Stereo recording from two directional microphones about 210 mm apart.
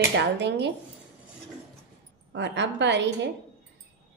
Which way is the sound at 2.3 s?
55° right (ahead or behind).